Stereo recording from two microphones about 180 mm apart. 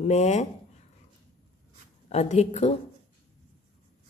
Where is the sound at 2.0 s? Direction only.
40° left (ahead or behind).